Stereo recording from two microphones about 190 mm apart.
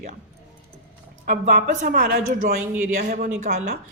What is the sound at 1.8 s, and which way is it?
Speech, 55° right (ahead or behind).